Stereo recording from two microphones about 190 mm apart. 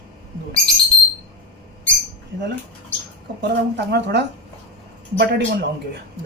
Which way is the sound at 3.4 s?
60° right (ahead or behind).